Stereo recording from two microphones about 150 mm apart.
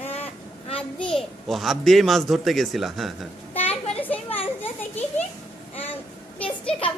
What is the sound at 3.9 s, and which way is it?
Children playing, 10° left (ahead or behind).